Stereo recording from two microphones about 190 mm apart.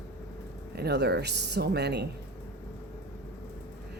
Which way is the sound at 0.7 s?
60° right (ahead or behind).